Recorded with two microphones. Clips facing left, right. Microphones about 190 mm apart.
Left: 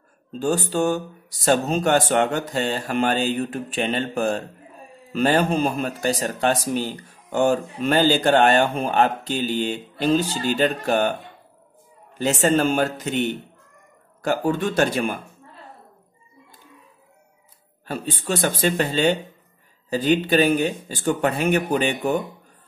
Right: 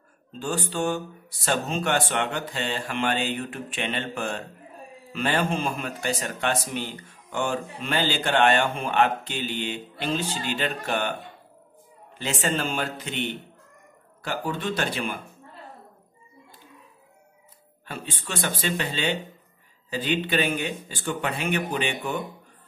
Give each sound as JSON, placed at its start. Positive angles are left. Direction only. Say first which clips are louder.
{"t": 0.4, "sound": "a man's voice", "louder": "left 6 dB", "side_deg": 40}
{"t": 12.2, "sound": "speech", "louder": "left 8 dB", "side_deg": 45}
{"t": 17.8, "sound": "a man's voice", "louder": "left 9 dB", "side_deg": 40}